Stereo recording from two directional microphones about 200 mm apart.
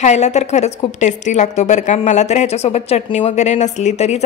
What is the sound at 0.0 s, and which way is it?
A woman's voice, 35° left (ahead or behind).